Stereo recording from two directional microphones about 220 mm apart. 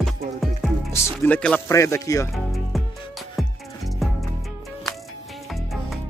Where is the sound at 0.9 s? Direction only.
10° left (ahead or behind).